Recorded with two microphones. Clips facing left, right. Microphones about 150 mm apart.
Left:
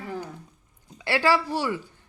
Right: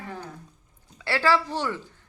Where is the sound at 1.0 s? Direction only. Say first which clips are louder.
Left 1 dB; 15° left (ahead or behind).